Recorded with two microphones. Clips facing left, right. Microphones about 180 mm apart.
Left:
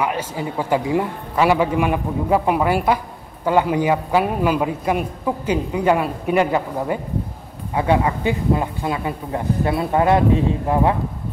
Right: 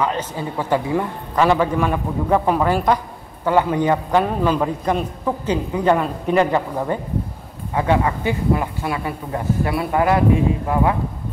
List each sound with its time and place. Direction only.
0.0 s a man's voice: 10° left (ahead or behind)